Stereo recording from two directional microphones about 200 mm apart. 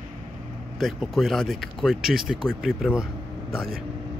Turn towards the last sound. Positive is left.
turn(degrees=0)  # may be behind; listen again after turning